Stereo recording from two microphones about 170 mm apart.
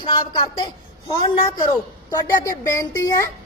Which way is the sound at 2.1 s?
20° left (ahead or behind).